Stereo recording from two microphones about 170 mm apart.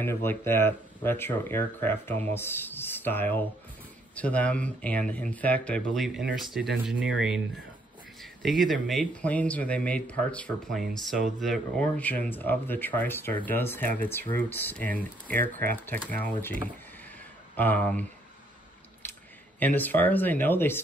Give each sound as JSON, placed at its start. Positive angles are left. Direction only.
{"t": 0.0, "sound": "speech", "side_deg": 15}
{"t": 15.3, "sound": "speech", "side_deg": -55}
{"t": 15.7, "sound": "speech", "side_deg": 10}
{"t": 19.6, "sound": "speech", "side_deg": 10}